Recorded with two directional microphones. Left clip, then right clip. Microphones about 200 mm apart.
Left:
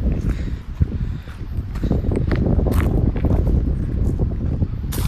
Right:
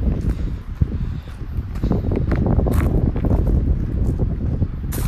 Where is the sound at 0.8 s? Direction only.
5° right (ahead or behind).